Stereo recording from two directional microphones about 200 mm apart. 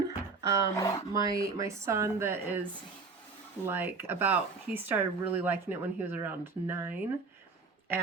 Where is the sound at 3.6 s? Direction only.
10° right (ahead or behind).